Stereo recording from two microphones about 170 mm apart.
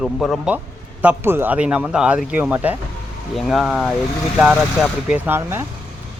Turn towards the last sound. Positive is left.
turn(degrees=-15)  # may be behind; listen again after turning